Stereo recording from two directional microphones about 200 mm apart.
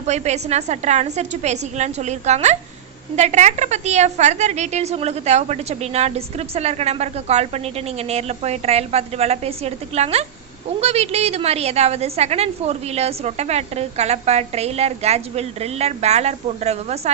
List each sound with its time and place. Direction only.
0.0 s a woman's voice: 35° right (ahead or behind)